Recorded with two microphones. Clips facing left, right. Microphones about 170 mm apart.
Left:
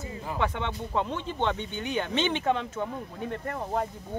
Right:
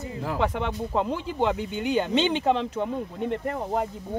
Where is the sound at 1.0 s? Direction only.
10° right (ahead or behind).